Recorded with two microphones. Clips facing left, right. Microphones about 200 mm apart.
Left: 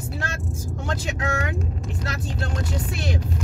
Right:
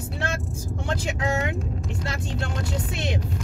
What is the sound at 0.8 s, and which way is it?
Speech, 25° right (ahead or behind).